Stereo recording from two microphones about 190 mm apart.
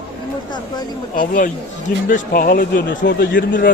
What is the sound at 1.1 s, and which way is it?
A man's voice, 45° left (ahead or behind).